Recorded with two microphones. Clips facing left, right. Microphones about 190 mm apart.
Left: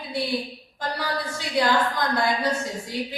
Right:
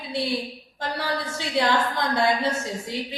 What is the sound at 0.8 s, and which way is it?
A woman's voice, 25° right (ahead or behind).